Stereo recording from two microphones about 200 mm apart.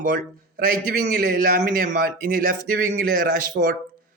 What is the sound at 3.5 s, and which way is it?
Speech, 55° right (ahead or behind).